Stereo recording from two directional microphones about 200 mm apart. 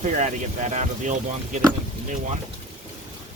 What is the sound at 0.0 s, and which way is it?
Speech, 40° right (ahead or behind).